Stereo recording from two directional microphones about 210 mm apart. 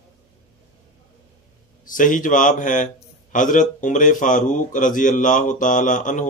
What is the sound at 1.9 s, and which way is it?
A man's voice, 40° left (ahead or behind).